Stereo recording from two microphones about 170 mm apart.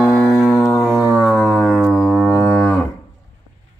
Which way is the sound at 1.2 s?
Centre (ahead or behind).